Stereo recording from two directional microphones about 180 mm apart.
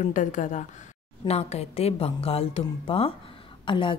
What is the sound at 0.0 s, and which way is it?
A woman's voice, 45° left (ahead or behind).